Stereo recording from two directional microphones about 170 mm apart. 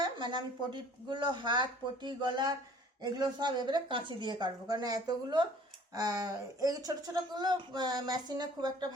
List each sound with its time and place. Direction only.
0.0 s speech: 25° right (ahead or behind)